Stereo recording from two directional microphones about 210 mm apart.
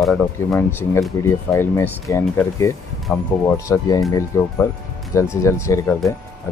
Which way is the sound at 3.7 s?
15° left (ahead or behind).